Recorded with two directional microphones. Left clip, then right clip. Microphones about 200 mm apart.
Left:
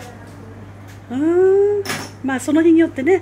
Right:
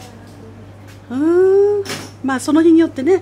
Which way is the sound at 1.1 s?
25° right (ahead or behind).